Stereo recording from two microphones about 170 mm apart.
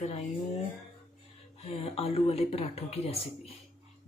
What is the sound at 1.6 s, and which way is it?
Speech, 35° left (ahead or behind).